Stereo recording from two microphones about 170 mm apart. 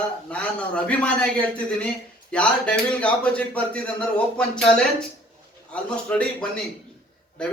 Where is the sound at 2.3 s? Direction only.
5° left (ahead or behind).